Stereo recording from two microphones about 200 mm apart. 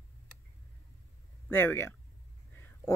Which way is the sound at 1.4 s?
10° left (ahead or behind).